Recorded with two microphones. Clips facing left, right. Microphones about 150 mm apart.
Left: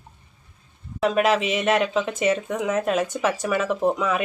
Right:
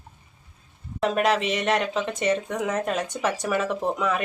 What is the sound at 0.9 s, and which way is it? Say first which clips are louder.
Speech: left 2 dB; centre (ahead or behind).